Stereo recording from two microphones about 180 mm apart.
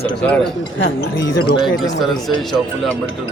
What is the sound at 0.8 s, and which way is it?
Speech, 70° left (ahead or behind).